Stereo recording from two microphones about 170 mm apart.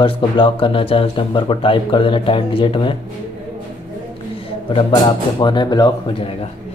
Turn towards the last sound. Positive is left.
turn(degrees=25)  # may be behind; listen again after turning